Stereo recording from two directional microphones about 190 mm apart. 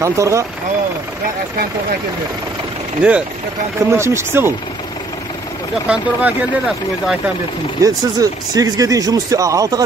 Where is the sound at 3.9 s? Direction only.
15° right (ahead or behind).